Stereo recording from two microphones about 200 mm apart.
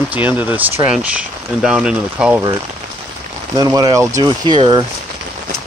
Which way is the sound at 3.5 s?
20° right (ahead or behind).